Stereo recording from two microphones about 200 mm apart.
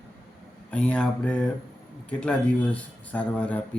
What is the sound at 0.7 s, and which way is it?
Speech, 5° left (ahead or behind).